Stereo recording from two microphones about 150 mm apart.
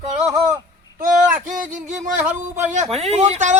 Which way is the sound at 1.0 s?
60° right (ahead or behind).